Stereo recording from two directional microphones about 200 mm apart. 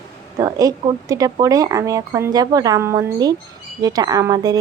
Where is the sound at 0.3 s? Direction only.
20° right (ahead or behind).